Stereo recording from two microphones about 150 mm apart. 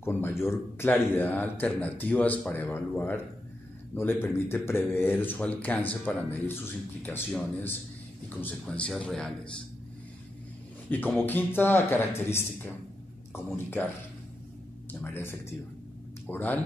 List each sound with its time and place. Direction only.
0.0 s speech: 15° left (ahead or behind)
8.4 s speech: 10° left (ahead or behind)
10.9 s speech: 15° left (ahead or behind)
14.9 s speech: 15° left (ahead or behind)